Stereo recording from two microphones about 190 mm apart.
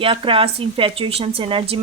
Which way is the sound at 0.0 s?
30° right (ahead or behind).